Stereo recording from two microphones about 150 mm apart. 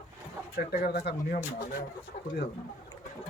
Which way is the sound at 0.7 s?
90° left.